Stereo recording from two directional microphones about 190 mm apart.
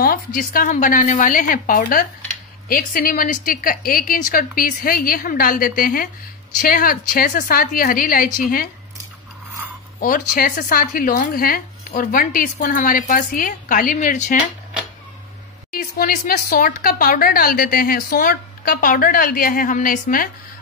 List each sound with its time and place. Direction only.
0.0 s a woman's voice: 50° left (ahead or behind)
9.9 s a woman's voice: 50° left (ahead or behind)
15.7 s a woman's voice: 50° left (ahead or behind)